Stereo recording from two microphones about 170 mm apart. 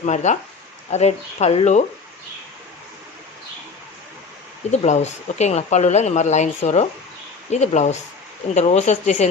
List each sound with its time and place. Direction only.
0.0 s speech: 45° left (ahead or behind)
4.7 s speech: 40° left (ahead or behind)